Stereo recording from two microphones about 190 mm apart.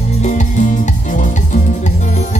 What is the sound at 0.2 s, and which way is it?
Music, 40° left (ahead or behind).